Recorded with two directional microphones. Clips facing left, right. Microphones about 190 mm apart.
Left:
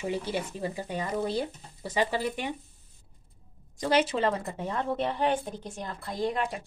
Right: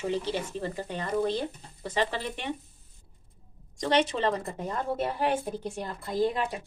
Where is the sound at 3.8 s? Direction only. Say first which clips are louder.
Even; 5° left (ahead or behind).